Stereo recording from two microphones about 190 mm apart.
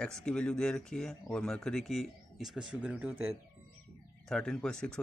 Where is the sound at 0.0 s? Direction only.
5° left (ahead or behind).